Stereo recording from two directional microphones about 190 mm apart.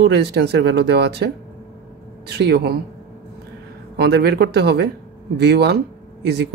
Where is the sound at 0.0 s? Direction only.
60° right (ahead or behind).